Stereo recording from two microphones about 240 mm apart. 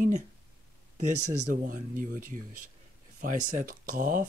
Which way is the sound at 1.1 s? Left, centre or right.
Right.